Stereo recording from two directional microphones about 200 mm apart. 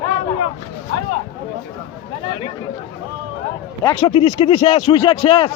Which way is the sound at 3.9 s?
30° left (ahead or behind).